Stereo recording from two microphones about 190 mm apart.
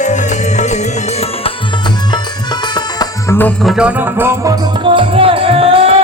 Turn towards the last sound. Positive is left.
turn(degrees=-30)  # may be behind; listen again after turning